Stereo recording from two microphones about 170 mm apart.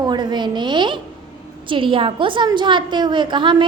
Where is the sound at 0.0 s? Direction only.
25° right (ahead or behind).